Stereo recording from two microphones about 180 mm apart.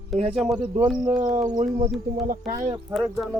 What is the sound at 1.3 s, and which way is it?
Speech, 40° right (ahead or behind).